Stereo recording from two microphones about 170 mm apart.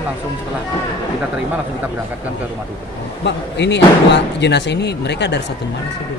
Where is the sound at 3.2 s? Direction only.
90° left.